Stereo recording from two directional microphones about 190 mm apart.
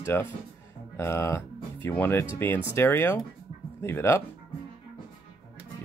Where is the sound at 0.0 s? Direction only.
10° left (ahead or behind).